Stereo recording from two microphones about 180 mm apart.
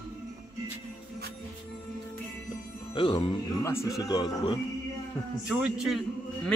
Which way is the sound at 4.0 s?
25° left (ahead or behind).